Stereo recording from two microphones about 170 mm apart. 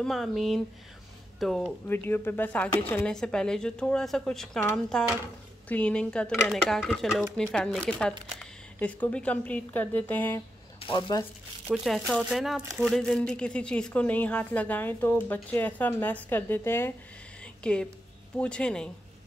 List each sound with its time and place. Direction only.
0.0 s speech: centre (ahead or behind)
1.9 s speech: 10° left (ahead or behind)
10.8 s speech: 30° left (ahead or behind)
11.6 s speech: 5° right (ahead or behind); by 16.9 s 15° left (ahead or behind)
17.4 s a sound: 5° left (ahead or behind)
18.4 s speech: 5° left (ahead or behind)